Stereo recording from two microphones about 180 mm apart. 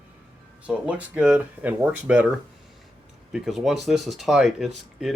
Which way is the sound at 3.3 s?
Centre (ahead or behind).